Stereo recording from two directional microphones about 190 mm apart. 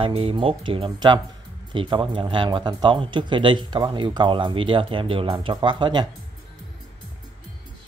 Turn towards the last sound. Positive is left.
turn(degrees=-25)  # may be behind; listen again after turning